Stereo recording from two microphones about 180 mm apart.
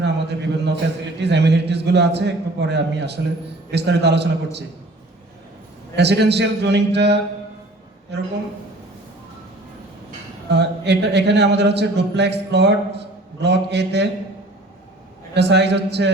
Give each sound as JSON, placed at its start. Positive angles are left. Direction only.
{"t": 0.0, "sound": "a sound", "side_deg": -70}
{"t": 1.2, "sound": "a man's voice", "side_deg": -70}
{"t": 6.0, "sound": "a man's voice", "side_deg": -70}
{"t": 10.5, "sound": "a man's voice", "side_deg": -70}
{"t": 15.4, "sound": "a man's voice", "side_deg": -70}